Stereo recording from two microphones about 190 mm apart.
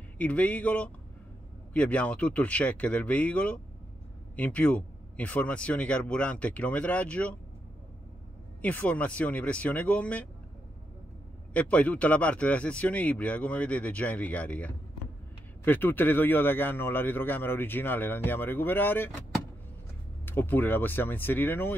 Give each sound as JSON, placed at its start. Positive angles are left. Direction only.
{"t": 0.2, "sound": "speech", "side_deg": 5}
{"t": 8.5, "sound": "speech", "side_deg": 10}
{"t": 11.5, "sound": "speech", "side_deg": 5}